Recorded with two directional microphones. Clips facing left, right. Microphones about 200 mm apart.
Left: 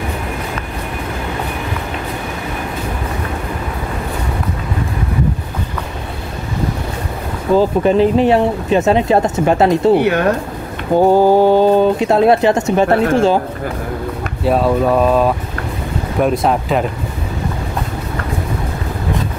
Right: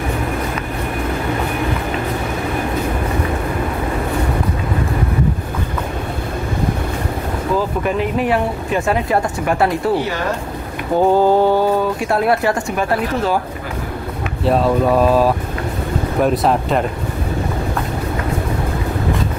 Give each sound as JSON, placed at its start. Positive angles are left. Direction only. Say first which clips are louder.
{"t": 7.5, "sound": "speech", "louder": "left 8 dB", "side_deg": 30}
{"t": 9.9, "sound": "speech", "louder": "left 7 dB", "side_deg": 60}
{"t": 11.0, "sound": "speech", "louder": "left 3 dB", "side_deg": 15}
{"t": 14.4, "sound": "speech", "louder": "left 1 dB", "side_deg": 0}